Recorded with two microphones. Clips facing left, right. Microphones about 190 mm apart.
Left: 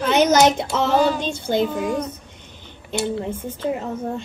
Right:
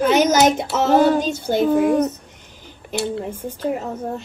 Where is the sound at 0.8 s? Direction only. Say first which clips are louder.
Right 4 dB; 55° right (ahead or behind).